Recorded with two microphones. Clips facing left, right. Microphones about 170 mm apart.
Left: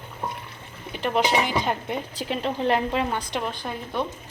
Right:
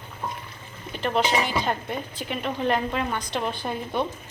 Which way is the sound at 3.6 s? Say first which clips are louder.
Right 2 dB; 10° right (ahead or behind).